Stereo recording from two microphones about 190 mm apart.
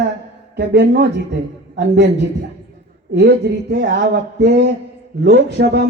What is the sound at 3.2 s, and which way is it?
A man's voice, 60° right (ahead or behind).